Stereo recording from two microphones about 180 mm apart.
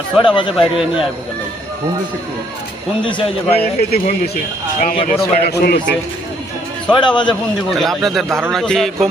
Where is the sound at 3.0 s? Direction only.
30° left (ahead or behind).